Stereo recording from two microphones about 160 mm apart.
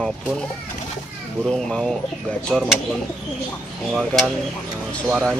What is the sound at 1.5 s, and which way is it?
Speech, 5° left (ahead or behind).